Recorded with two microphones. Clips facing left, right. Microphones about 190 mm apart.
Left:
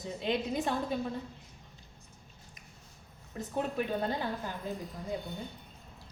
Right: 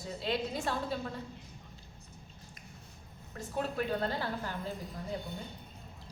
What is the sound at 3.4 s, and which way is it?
A woman's voice, 15° left (ahead or behind).